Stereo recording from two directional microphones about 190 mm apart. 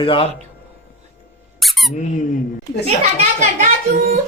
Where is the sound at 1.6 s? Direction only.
Centre (ahead or behind).